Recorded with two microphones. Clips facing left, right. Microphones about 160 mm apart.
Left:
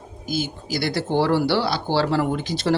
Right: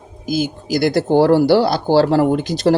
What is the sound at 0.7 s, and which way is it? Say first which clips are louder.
Speech: right 9 dB; 45° right (ahead or behind).